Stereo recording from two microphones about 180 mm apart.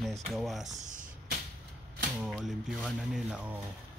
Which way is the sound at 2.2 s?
Centre (ahead or behind).